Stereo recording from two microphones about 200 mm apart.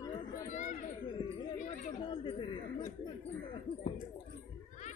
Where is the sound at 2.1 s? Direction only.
25° left (ahead or behind).